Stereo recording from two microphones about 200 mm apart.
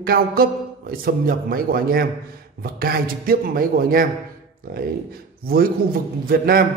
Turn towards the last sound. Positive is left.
turn(degrees=-45)  # may be behind; listen again after turning